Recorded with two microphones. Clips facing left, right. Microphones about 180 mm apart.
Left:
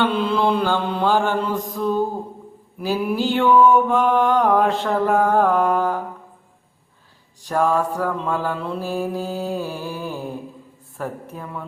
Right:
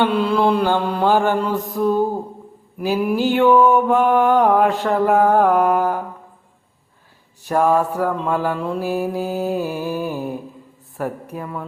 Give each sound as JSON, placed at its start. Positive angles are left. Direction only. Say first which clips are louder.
{"t": 0.0, "sound": "mantra", "louder": "right 2 dB", "side_deg": -5}
{"t": 1.0, "sound": "mantra", "louder": "right 3 dB", "side_deg": -15}
{"t": 4.8, "sound": "mantra", "louder": "right 3 dB", "side_deg": 0}
{"t": 5.3, "sound": "mantra", "louder": "right 2 dB", "side_deg": -15}
{"t": 7.4, "sound": "mantra", "louder": "right 3 dB", "side_deg": -15}
{"t": 11.3, "sound": "mantra", "louder": "right 4 dB", "side_deg": -5}